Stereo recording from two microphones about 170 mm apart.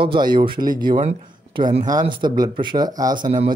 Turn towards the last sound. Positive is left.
turn(degrees=-30)  # may be behind; listen again after turning